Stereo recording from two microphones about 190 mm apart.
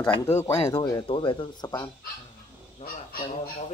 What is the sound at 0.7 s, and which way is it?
Speech, 25° left (ahead or behind).